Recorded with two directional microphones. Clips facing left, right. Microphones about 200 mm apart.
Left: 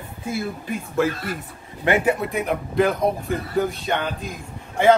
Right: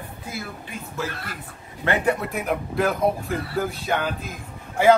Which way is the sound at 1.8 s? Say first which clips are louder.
Left 3 dB; 10° left (ahead or behind).